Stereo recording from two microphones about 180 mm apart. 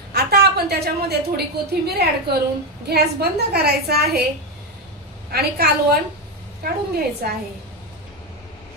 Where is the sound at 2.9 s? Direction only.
60° right (ahead or behind).